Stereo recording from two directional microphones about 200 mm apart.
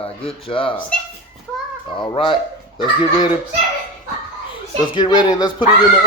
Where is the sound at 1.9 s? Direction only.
25° left (ahead or behind).